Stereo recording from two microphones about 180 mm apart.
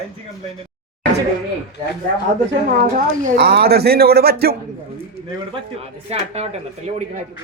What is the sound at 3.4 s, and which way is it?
Speech, 65° right (ahead or behind).